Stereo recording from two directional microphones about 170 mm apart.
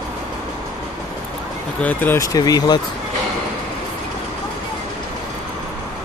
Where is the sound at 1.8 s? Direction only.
10° left (ahead or behind).